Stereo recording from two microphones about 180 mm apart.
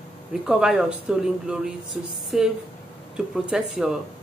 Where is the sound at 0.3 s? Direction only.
5° right (ahead or behind).